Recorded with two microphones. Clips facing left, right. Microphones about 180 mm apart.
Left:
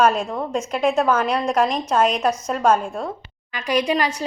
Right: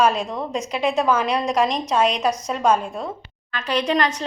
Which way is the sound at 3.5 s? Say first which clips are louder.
Left 1 dB; 10° left (ahead or behind).